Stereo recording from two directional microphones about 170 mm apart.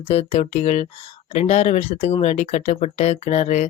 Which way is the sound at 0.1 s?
40° left (ahead or behind).